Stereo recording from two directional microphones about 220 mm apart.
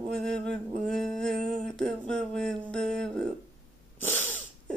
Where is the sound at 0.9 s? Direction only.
Centre (ahead or behind).